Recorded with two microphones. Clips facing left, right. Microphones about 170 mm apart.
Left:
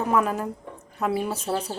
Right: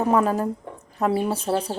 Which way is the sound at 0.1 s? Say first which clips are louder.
Right 2 dB; 35° right (ahead or behind).